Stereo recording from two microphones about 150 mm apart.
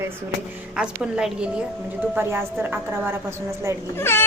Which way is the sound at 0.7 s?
5° right (ahead or behind).